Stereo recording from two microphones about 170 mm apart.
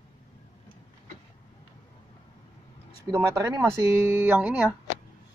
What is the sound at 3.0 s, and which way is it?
Speech, 20° right (ahead or behind).